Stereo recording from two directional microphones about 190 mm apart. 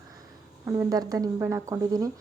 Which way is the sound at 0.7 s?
15° right (ahead or behind).